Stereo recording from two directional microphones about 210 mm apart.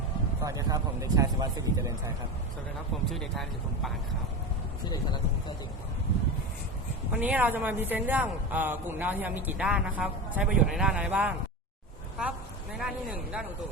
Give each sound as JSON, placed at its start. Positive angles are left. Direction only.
{"t": 0.4, "sound": "a woman's voice", "side_deg": -15}
{"t": 3.1, "sound": "speech", "side_deg": 0}
{"t": 7.1, "sound": "a woman's voice", "side_deg": -10}
{"t": 12.7, "sound": "speech", "side_deg": -5}